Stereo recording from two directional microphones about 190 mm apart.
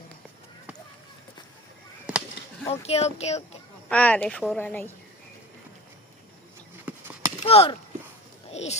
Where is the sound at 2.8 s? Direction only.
35° left (ahead or behind).